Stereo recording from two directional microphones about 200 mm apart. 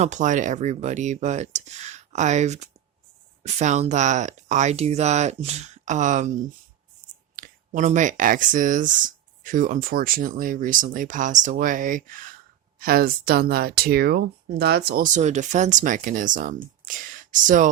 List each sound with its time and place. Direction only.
0.0 s speech: 35° right (ahead or behind)